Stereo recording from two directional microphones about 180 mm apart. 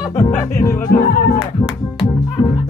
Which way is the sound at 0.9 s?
60° left (ahead or behind).